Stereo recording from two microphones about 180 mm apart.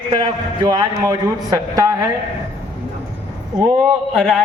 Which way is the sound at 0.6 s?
20° right (ahead or behind).